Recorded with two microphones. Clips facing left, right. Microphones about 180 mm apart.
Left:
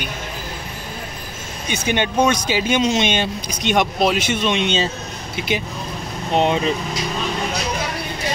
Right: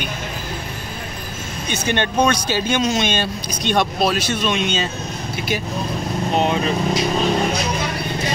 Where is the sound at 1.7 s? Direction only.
10° left (ahead or behind).